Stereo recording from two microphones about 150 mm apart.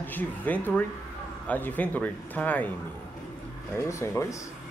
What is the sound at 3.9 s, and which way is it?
Speech, 20° left (ahead or behind).